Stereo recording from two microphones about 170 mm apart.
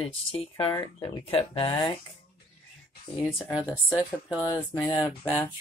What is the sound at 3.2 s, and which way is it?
Speech, 20° left (ahead or behind).